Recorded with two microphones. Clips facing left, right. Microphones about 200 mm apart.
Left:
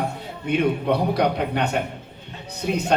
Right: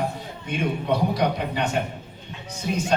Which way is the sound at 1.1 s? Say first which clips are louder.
Left 3 dB; 60° left (ahead or behind).